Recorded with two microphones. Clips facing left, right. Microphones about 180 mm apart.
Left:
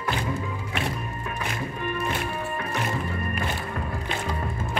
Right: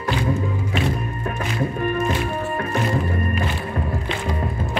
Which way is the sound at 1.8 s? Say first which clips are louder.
Right 6 dB; 45° right (ahead or behind).